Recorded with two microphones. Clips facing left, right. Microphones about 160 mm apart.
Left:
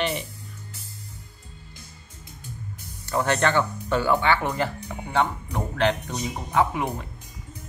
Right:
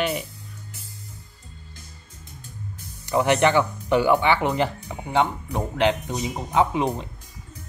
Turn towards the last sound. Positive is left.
turn(degrees=-20)  # may be behind; listen again after turning